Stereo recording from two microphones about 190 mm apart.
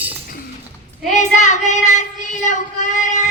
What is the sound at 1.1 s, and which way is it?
Child singing, 40° left (ahead or behind).